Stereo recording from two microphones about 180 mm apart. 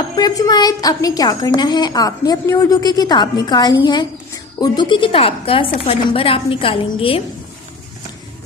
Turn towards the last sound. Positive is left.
turn(degrees=30)  # may be behind; listen again after turning